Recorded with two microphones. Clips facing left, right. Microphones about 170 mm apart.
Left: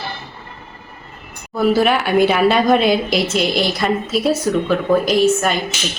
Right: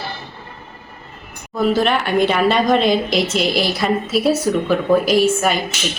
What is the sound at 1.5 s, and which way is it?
A woman's voice, 5° left (ahead or behind).